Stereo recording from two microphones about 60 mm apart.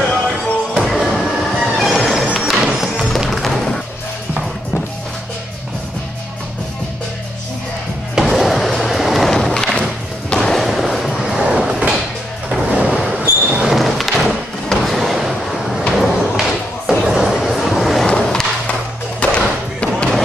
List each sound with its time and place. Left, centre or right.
0.1 s music: centre
0.8 s a sound: centre
1.6 s train: centre
2.3 s music: centre
8.2 s music: centre
8.7 s vehicle: centre
9.3 s a sound: centre
10.3 s skateboard: centre
12.6 s a sound: centre
15.9 s thump: centre
17.1 s a sound: centre
18.0 s skateboard: centre
19.1 s thump: centre